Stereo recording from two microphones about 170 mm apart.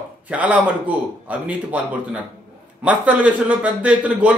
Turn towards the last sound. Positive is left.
turn(degrees=-10)  # may be behind; listen again after turning